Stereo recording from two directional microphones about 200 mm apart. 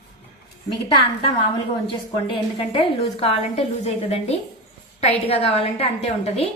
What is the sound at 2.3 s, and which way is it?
A woman's voice, 25° left (ahead or behind).